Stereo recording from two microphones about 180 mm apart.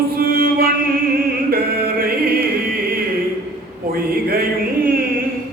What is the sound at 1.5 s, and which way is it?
Music, 55° right (ahead or behind).